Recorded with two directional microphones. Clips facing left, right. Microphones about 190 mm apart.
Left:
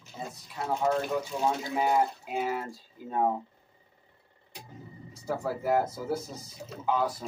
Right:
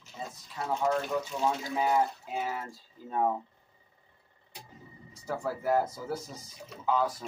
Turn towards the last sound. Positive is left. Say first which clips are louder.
# even
turn(degrees=10)  # may be behind; listen again after turning